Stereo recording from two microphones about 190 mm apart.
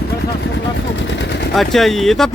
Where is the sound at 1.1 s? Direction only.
65° left (ahead or behind).